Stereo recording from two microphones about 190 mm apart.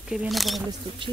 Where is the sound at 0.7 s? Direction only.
25° right (ahead or behind).